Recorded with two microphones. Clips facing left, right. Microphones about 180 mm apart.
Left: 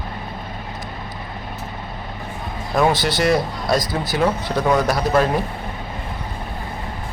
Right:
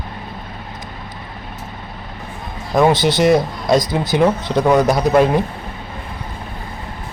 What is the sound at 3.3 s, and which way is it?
Speech, 20° right (ahead or behind).